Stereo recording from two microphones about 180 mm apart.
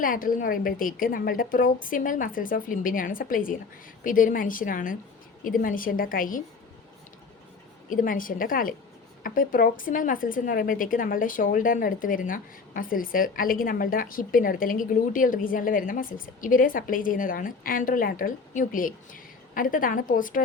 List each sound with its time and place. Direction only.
0.0 s a woman's voice: 50° left (ahead or behind)
7.9 s a woman's voice: 50° left (ahead or behind)